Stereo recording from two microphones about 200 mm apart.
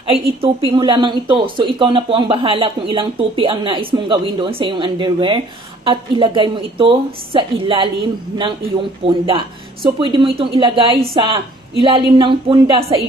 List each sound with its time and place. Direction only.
0.1 s speech: 25° right (ahead or behind)
9.0 s speech: 25° right (ahead or behind)